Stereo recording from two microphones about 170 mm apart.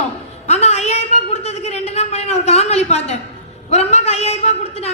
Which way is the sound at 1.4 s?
40° left (ahead or behind).